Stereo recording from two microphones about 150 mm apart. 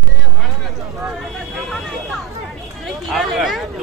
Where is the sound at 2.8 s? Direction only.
Centre (ahead or behind).